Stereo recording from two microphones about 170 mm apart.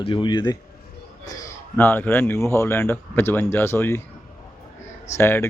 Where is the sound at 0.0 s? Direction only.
30° left (ahead or behind); by 4.0 s 15° left (ahead or behind).